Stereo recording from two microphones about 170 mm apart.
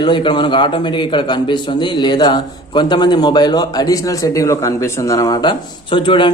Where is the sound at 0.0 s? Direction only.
30° left (ahead or behind).